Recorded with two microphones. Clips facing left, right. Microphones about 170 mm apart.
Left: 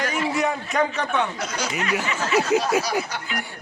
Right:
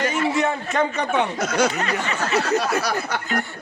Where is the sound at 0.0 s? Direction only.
Centre (ahead or behind).